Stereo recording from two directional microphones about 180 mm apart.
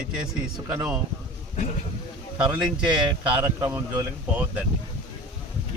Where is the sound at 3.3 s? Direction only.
10° right (ahead or behind).